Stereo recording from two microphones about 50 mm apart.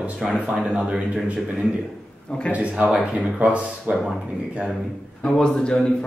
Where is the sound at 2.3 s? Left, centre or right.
Centre.